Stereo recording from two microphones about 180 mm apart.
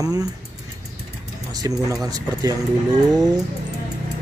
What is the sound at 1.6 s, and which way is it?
Speech, 20° right (ahead or behind).